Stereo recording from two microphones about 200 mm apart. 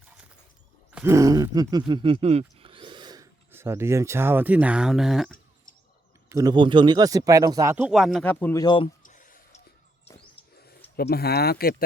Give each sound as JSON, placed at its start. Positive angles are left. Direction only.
{"t": 0.9, "sound": "speech", "side_deg": -10}
{"t": 6.2, "sound": "speech", "side_deg": -15}
{"t": 8.6, "sound": "speech", "side_deg": 25}
{"t": 9.0, "sound": "clicking", "side_deg": 40}
{"t": 10.9, "sound": "speech", "side_deg": 50}